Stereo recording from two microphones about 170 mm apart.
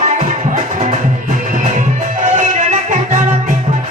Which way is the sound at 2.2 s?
45° right (ahead or behind).